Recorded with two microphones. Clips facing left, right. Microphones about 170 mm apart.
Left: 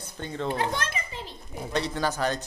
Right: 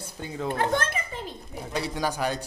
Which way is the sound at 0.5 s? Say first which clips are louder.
Right 4 dB; 50° right (ahead or behind).